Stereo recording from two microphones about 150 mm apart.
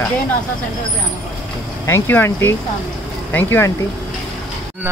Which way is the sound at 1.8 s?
15° left (ahead or behind).